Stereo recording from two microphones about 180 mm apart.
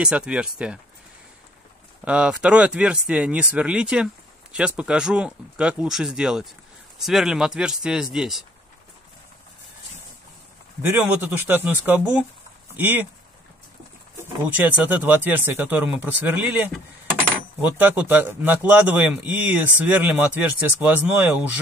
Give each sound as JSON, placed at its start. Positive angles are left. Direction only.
{"t": 0.0, "sound": "speech", "side_deg": -5}
{"t": 2.0, "sound": "speech", "side_deg": -5}
{"t": 10.9, "sound": "a man's voice", "side_deg": -10}
{"t": 14.6, "sound": "a man's voice", "side_deg": -10}